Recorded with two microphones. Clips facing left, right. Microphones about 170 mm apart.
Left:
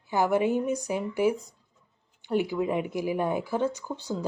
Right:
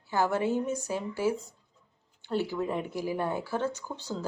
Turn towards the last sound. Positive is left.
turn(degrees=15)  # may be behind; listen again after turning